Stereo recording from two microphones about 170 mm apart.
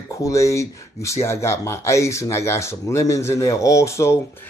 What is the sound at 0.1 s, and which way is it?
Speech, 20° left (ahead or behind).